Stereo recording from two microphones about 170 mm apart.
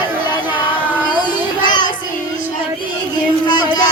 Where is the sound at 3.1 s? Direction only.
25° left (ahead or behind).